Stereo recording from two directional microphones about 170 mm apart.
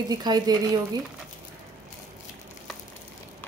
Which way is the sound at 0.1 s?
25° right (ahead or behind).